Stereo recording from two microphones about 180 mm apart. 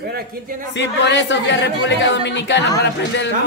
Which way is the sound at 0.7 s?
80° left.